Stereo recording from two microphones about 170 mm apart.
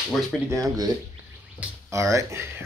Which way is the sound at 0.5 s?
20° right (ahead or behind).